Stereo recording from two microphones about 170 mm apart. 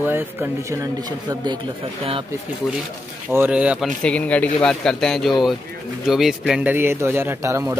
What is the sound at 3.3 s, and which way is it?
Speech, 10° right (ahead or behind).